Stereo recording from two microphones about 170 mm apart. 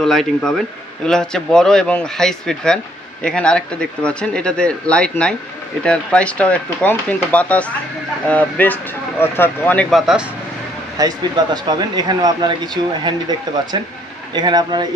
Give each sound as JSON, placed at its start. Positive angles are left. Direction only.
{"t": 0.0, "sound": "speech", "side_deg": 5}
{"t": 11.0, "sound": "speech", "side_deg": -20}
{"t": 14.3, "sound": "speech", "side_deg": -25}